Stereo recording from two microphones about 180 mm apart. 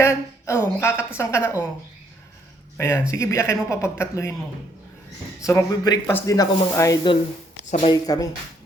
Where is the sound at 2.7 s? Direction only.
15° left (ahead or behind).